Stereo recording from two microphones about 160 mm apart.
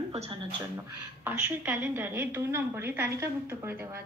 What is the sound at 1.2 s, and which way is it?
A woman's voice, 10° right (ahead or behind).